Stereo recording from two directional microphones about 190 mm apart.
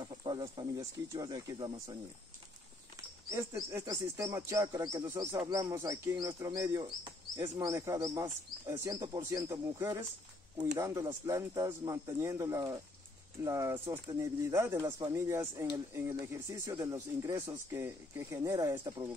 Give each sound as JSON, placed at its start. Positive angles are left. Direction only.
{"t": 0.0, "sound": "speech", "side_deg": -20}
{"t": 3.3, "sound": "speech", "side_deg": -15}